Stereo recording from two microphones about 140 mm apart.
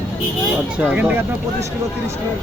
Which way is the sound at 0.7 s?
10° right (ahead or behind).